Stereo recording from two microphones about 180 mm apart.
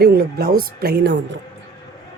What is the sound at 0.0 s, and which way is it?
Speech, 65° right (ahead or behind).